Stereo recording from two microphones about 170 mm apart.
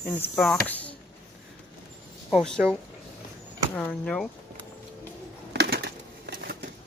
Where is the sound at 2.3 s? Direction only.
5° left (ahead or behind).